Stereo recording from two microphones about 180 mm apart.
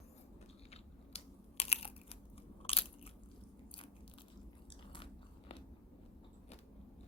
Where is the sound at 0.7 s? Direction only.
35° left (ahead or behind).